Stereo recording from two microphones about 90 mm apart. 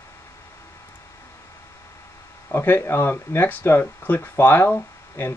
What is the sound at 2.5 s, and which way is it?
Speech, 25° left (ahead or behind).